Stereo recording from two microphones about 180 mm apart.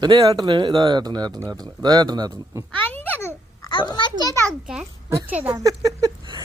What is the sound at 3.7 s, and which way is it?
Speech, 25° left (ahead or behind).